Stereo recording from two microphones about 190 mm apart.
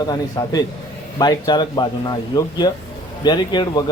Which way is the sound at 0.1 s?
20° left (ahead or behind).